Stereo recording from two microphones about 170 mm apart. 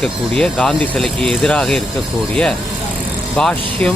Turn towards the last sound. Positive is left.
turn(degrees=5)  # may be behind; listen again after turning